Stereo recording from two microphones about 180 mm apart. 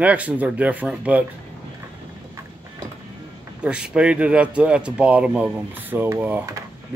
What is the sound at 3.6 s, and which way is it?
Speech, 5° right (ahead or behind).